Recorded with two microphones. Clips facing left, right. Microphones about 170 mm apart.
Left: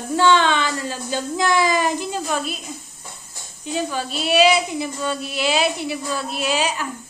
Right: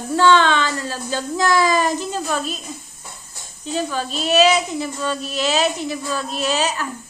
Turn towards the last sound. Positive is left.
turn(degrees=10)  # may be behind; listen again after turning